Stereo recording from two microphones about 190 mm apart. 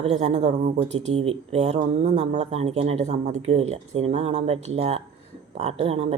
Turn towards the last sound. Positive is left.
turn(degrees=-30)  # may be behind; listen again after turning